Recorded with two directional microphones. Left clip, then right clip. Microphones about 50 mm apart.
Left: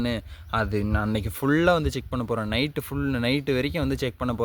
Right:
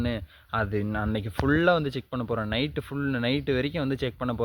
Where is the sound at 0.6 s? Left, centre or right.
Left.